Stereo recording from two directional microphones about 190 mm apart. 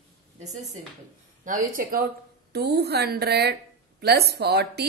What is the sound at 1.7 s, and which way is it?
A woman's voice, 50° right (ahead or behind).